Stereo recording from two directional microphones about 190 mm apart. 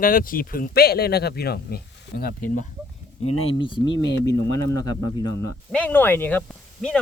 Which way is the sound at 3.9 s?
65° left (ahead or behind).